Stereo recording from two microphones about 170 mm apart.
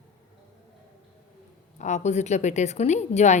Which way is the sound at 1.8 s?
45° left (ahead or behind).